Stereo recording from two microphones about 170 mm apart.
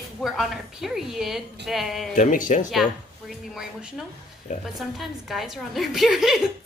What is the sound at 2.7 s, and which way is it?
A woman's voice, centre (ahead or behind).